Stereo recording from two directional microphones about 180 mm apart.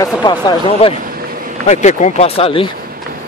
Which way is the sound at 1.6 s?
40° left (ahead or behind).